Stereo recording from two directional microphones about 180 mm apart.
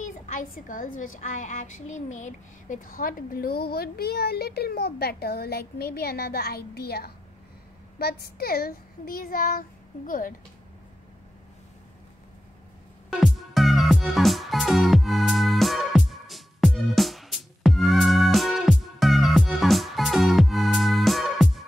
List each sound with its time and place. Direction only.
0.0 s a child's voice: 45° left (ahead or behind)
13.2 s music: centre (ahead or behind)